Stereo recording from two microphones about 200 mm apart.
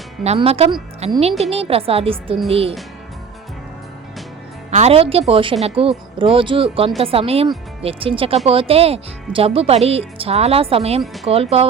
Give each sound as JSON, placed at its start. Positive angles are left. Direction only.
{"t": 0.3, "sound": "speech", "side_deg": -30}
{"t": 4.7, "sound": "speech", "side_deg": -30}
{"t": 11.0, "sound": "speech", "side_deg": 0}
{"t": 11.3, "sound": "speech", "side_deg": -30}